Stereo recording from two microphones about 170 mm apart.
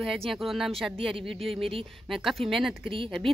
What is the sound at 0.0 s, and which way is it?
Speech, centre (ahead or behind).